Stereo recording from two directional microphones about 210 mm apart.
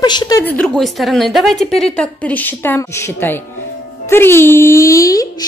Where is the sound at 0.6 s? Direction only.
Centre (ahead or behind).